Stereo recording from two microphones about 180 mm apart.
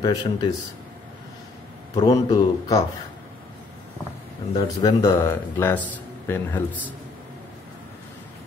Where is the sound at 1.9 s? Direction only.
25° left (ahead or behind).